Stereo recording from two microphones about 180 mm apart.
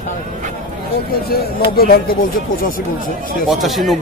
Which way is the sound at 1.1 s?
60° left (ahead or behind).